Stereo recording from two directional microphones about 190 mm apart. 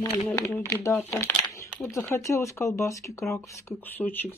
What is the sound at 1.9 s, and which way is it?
Speech, 15° left (ahead or behind).